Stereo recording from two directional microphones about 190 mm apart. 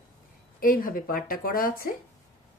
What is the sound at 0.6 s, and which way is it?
Speech, 50° left (ahead or behind).